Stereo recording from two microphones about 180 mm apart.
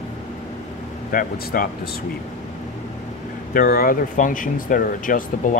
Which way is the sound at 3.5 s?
55° left (ahead or behind).